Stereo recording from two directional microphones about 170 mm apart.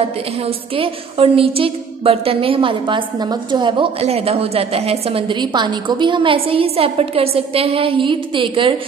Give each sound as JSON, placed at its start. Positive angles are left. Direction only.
{"t": 0.7, "sound": "a woman's voice", "side_deg": -35}